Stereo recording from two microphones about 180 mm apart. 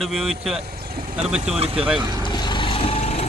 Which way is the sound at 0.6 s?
60° right (ahead or behind).